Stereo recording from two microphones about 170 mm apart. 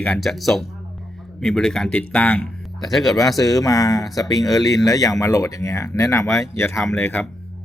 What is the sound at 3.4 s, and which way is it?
Speech, 20° left (ahead or behind).